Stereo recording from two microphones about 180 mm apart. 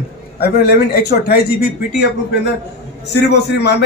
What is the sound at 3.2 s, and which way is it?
Speech, 70° left (ahead or behind).